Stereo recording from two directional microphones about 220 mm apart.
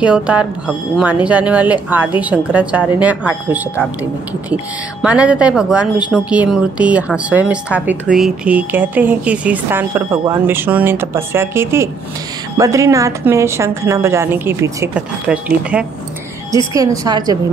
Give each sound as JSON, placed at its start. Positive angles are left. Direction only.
{"t": 0.0, "sound": "a woman's voice", "side_deg": -5}
{"t": 5.0, "sound": "a woman's voice", "side_deg": -5}
{"t": 16.7, "sound": "a woman's voice", "side_deg": -15}